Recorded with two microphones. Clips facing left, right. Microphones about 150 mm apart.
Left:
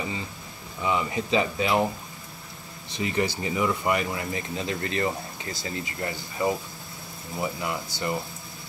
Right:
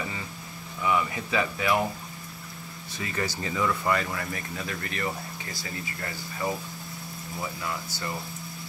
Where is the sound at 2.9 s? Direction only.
20° left (ahead or behind).